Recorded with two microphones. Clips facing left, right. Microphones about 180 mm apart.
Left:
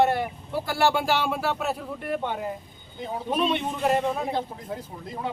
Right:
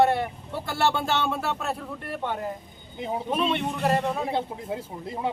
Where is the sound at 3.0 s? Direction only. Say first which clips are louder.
Right 2 dB; 20° right (ahead or behind).